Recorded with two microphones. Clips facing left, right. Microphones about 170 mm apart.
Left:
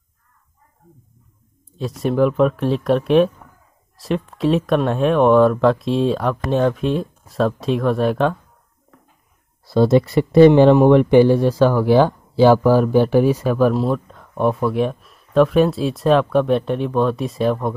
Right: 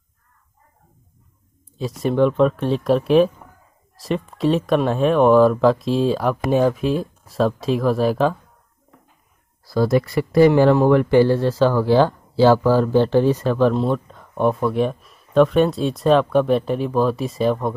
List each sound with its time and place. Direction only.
1.8 s speech: centre (ahead or behind)
9.7 s speech: 25° left (ahead or behind); by 17.7 s centre (ahead or behind)